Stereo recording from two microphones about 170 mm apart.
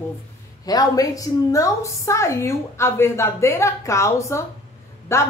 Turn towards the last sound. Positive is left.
turn(degrees=15)  # may be behind; listen again after turning